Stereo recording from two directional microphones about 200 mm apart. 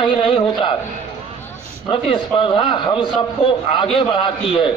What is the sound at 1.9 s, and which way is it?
A man's voice, 25° left (ahead or behind).